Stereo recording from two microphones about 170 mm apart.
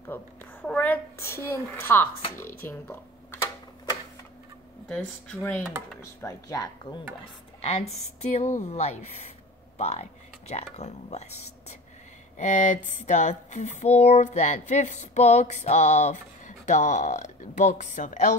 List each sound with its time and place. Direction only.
0.1 s a child's voice: 10° left (ahead or behind)
2.6 s a sound: 15° left (ahead or behind)
4.8 s speech: 5° left (ahead or behind); by 7.0 s 25° left (ahead or behind)
7.6 s speech: 40° left (ahead or behind)
12.4 s speech: 45° left (ahead or behind)